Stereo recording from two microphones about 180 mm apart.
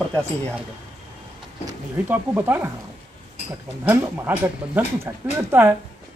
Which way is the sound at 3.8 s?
10° right (ahead or behind).